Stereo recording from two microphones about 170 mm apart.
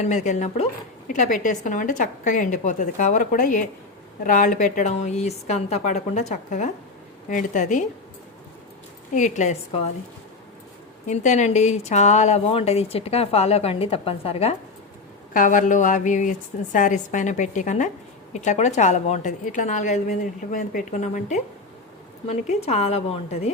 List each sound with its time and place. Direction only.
0.0 s a woman's voice: 45° left (ahead or behind)
9.1 s a woman's voice: 45° left (ahead or behind)
11.0 s speech: 45° left (ahead or behind)
15.3 s a woman's voice: 50° left (ahead or behind)